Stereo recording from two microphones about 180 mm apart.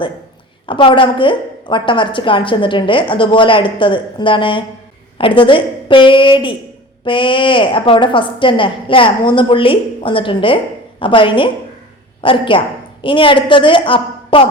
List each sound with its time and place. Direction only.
0.7 s a woman's voice: 30° left (ahead or behind)